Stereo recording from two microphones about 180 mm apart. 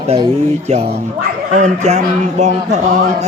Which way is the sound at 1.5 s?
40° right (ahead or behind).